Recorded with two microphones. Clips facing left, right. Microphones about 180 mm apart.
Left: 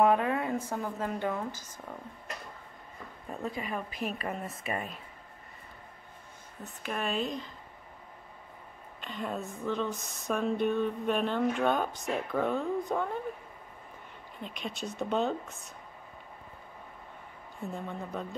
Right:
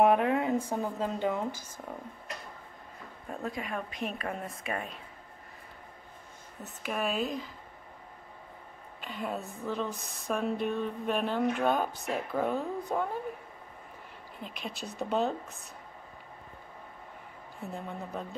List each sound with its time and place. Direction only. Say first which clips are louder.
0.0 s a woman's voice: right 1 dB; 15° right (ahead or behind)
3.3 s speech: even; centre (ahead or behind)
6.6 s speech: right 2 dB; 5° right (ahead or behind)
9.0 s speech: even; centre (ahead or behind)
14.4 s speech: left 2 dB; 5° right (ahead or behind)
17.6 s speech: left 1 dB; centre (ahead or behind)